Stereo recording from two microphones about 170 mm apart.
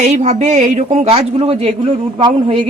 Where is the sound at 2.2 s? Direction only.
30° right (ahead or behind).